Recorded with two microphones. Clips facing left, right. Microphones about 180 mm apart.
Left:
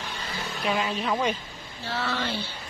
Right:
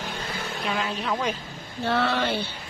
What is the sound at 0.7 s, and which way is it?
Speech, centre (ahead or behind).